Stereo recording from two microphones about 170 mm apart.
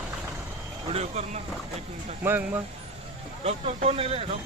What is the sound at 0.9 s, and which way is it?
Speech, 40° right (ahead or behind).